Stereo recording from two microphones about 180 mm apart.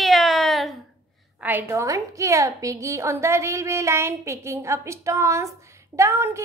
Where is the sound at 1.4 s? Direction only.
10° right (ahead or behind).